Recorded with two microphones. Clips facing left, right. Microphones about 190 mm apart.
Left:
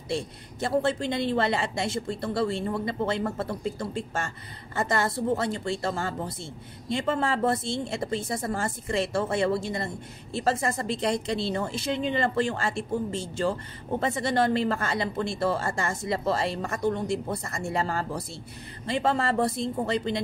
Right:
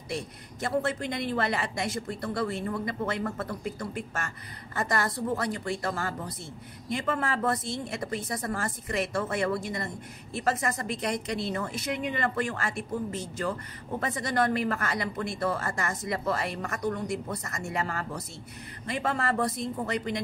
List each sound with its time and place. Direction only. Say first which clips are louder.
0.1 s a woman's voice: left 4 dB; 30° left (ahead or behind)